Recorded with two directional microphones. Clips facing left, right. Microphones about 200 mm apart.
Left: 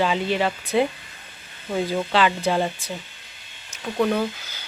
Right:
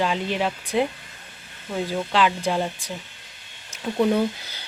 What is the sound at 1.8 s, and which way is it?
Speech, 5° left (ahead or behind).